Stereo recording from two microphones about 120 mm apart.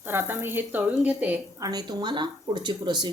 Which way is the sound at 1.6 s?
35° right (ahead or behind).